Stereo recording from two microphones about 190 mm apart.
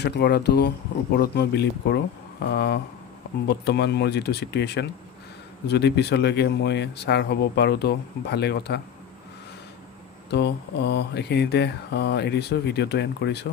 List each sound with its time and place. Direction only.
0.0 s speech: 60° left (ahead or behind)
10.3 s speech: 60° left (ahead or behind)